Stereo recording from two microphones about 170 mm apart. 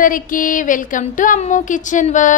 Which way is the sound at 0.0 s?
50° left (ahead or behind).